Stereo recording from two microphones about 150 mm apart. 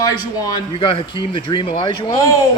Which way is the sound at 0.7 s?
35° left (ahead or behind).